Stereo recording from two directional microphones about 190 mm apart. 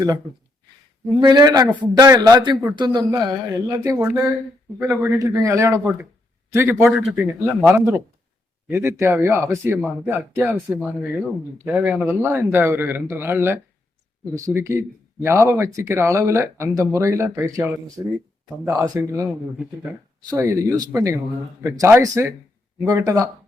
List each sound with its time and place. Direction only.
1.1 s speech: 20° right (ahead or behind)
3.9 s speech: 5° right (ahead or behind)
10.7 s speech: centre (ahead or behind)